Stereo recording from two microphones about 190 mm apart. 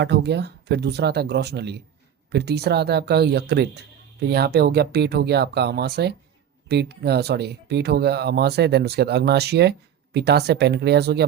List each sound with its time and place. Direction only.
0.0 s speech: 65° right (ahead or behind)